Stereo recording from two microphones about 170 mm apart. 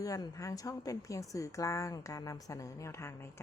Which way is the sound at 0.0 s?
20° left (ahead or behind).